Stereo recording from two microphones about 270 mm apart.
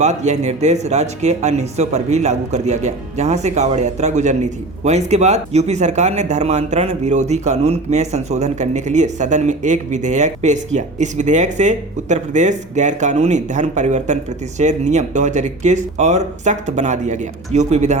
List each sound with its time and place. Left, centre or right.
0.0 s speech: right